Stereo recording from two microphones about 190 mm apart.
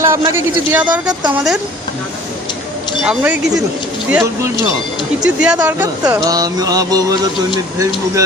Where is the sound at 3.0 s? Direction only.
5° right (ahead or behind).